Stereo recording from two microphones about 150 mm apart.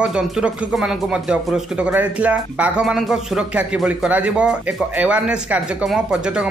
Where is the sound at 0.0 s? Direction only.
5° right (ahead or behind).